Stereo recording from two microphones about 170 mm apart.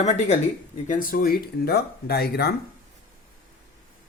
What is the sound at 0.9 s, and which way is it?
Speech, 55° left (ahead or behind).